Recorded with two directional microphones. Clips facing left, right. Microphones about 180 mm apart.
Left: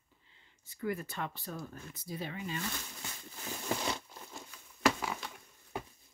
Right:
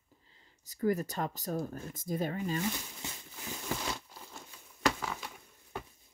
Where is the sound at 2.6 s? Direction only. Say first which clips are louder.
Right 5 dB; 15° right (ahead or behind).